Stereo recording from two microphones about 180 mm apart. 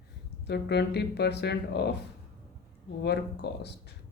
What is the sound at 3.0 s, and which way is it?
Speech, 65° left (ahead or behind).